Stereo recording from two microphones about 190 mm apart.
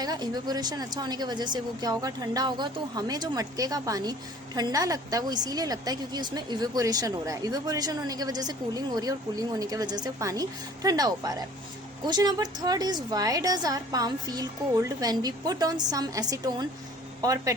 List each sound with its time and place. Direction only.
0.0 s a woman's voice: 20° right (ahead or behind)